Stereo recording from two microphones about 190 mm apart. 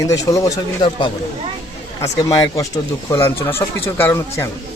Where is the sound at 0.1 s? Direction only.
15° left (ahead or behind).